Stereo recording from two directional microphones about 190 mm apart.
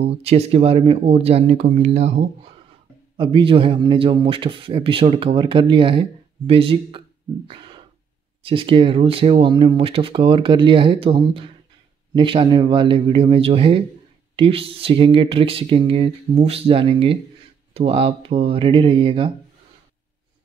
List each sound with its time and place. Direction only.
0.0 s speech: 35° right (ahead or behind)
7.4 s a sound: 25° right (ahead or behind)
8.4 s speech: 25° right (ahead or behind)